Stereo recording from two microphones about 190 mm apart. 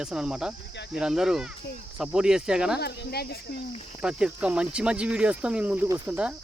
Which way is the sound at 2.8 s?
60° left (ahead or behind).